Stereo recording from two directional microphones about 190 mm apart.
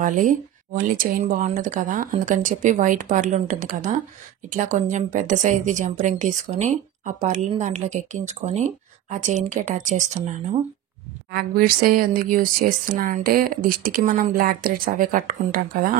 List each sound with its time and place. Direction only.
0.0 s a woman's voice: 45° right (ahead or behind)
11.3 s speech: 50° right (ahead or behind)